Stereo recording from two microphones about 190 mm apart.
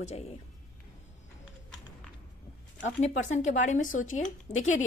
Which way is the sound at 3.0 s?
40° left (ahead or behind).